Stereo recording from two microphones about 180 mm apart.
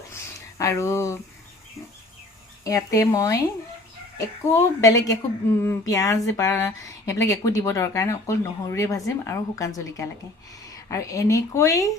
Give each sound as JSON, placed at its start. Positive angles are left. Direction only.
{"t": 0.6, "sound": "speech", "side_deg": 15}
{"t": 2.6, "sound": "speech", "side_deg": 20}
{"t": 4.5, "sound": "speech", "side_deg": 20}